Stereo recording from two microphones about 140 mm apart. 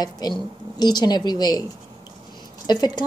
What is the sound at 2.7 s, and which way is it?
Speech, 30° left (ahead or behind).